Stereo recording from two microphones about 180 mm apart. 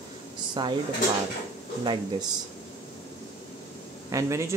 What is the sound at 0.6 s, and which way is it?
Speech, 25° right (ahead or behind).